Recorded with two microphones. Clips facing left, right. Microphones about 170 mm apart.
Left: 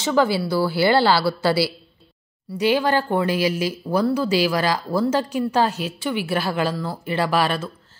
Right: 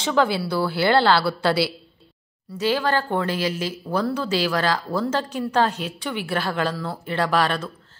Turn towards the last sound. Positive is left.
turn(degrees=5)  # may be behind; listen again after turning